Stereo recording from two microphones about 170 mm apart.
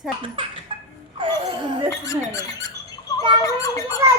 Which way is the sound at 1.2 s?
25° right (ahead or behind).